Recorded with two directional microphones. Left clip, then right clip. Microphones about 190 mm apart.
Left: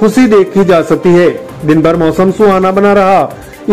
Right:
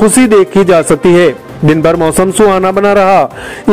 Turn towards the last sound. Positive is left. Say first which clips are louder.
# even
turn(degrees=-35)  # may be behind; listen again after turning